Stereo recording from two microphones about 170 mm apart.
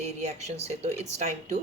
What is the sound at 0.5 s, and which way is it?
Speech, 40° right (ahead or behind).